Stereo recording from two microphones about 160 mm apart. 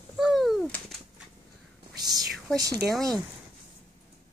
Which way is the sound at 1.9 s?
25° right (ahead or behind).